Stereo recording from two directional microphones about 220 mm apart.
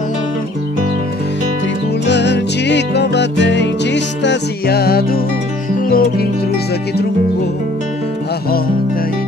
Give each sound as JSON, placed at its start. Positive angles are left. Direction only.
{"t": 2.0, "sound": "music", "side_deg": 50}